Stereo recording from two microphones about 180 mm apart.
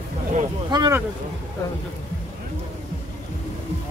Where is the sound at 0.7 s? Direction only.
20° right (ahead or behind).